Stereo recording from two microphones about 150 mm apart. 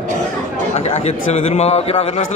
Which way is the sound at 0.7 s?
45° left (ahead or behind).